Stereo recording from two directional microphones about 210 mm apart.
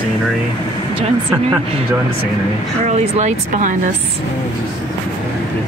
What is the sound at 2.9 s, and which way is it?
Speech, 35° right (ahead or behind).